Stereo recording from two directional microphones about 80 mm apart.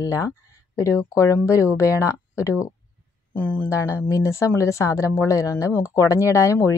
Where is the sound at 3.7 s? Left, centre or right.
Left.